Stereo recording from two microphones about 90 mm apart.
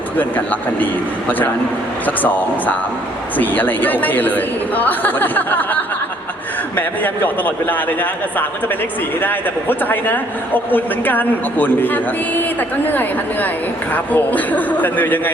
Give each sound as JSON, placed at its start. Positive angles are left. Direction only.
{"t": 0.2, "sound": "a man's voice", "side_deg": 20}
{"t": 2.0, "sound": "a man's voice", "side_deg": 20}